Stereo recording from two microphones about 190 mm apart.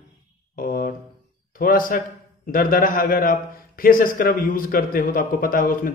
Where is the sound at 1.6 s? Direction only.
45° left (ahead or behind).